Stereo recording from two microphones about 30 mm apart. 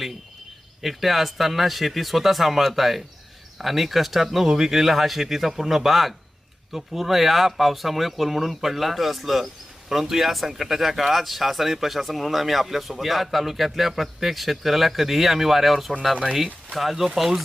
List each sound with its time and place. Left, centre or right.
0.8 s a man's voice: centre